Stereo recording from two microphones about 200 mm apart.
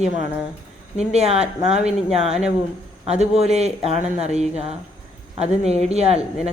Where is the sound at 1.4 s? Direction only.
5° right (ahead or behind).